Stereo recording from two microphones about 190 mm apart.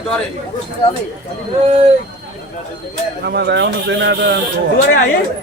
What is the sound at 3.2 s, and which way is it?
Speech, 60° right (ahead or behind).